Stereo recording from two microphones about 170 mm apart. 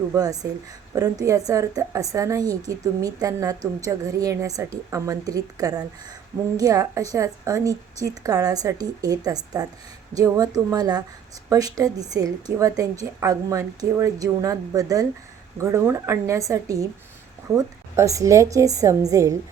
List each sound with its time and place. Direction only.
0.1 s a woman's voice: 20° right (ahead or behind)